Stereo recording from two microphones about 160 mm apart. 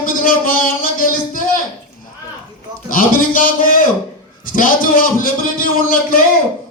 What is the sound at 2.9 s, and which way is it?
A man's voice, 60° left (ahead or behind).